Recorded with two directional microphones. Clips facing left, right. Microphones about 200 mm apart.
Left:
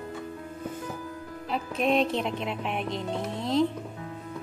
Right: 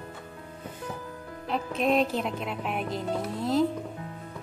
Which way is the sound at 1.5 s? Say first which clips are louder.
Even; centre (ahead or behind).